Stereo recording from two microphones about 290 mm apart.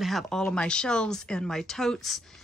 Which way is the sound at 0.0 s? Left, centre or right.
Centre.